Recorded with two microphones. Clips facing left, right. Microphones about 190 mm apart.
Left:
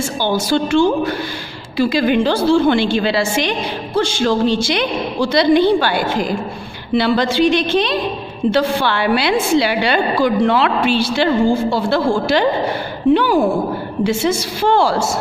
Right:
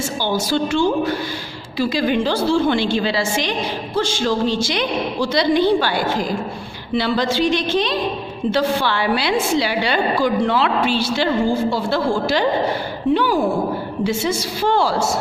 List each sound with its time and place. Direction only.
0.3 s a woman's voice: 60° left (ahead or behind)